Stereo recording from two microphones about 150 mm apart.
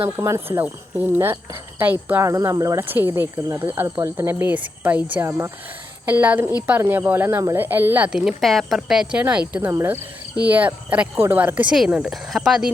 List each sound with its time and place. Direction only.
0.2 s a woman's voice: 20° right (ahead or behind); by 12.7 s 5° right (ahead or behind)